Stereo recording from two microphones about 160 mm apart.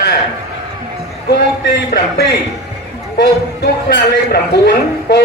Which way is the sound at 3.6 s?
90° left.